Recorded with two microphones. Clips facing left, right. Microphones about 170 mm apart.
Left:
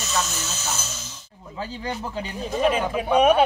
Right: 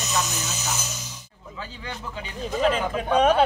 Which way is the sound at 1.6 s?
40° left (ahead or behind).